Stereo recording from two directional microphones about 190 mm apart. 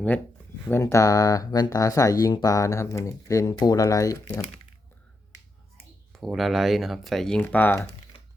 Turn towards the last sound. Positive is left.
turn(degrees=10)  # may be behind; listen again after turning